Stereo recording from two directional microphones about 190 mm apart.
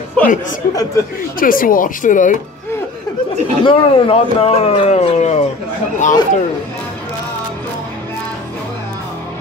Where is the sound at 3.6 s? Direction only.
30° left (ahead or behind).